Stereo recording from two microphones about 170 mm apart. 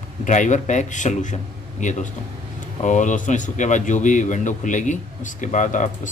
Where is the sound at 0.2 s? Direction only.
45° left (ahead or behind).